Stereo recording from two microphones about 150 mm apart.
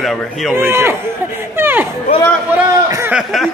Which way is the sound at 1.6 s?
15° right (ahead or behind).